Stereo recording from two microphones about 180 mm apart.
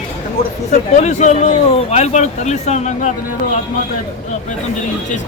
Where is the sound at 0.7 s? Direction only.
40° left (ahead or behind).